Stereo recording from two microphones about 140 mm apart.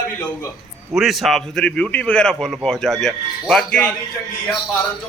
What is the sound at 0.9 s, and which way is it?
A man's voice, centre (ahead or behind).